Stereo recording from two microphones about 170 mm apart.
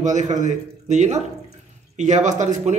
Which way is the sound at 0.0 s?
45° right (ahead or behind).